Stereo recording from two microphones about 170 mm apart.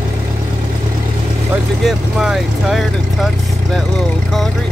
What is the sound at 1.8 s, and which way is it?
Speech, centre (ahead or behind).